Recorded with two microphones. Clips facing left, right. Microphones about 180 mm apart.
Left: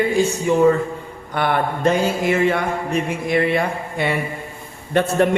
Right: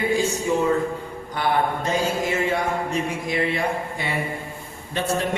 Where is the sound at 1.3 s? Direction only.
60° left (ahead or behind).